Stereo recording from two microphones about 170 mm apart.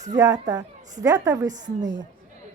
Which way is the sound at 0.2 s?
20° right (ahead or behind).